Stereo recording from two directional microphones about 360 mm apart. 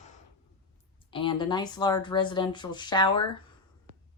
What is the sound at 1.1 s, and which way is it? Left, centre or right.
Speech, centre.